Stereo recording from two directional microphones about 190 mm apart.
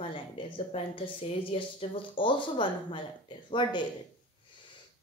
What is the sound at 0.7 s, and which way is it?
Speech, 25° left (ahead or behind).